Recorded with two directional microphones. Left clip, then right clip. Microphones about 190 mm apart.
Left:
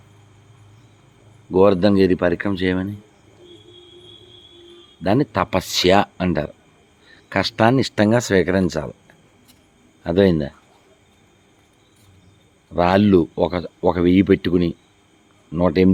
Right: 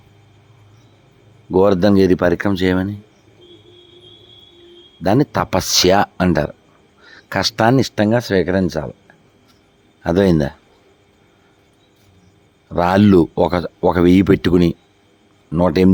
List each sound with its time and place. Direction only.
1.5 s speech: 25° right (ahead or behind)
5.0 s speech: 25° right (ahead or behind)
10.0 s speech: 30° right (ahead or behind)
12.7 s speech: 30° right (ahead or behind)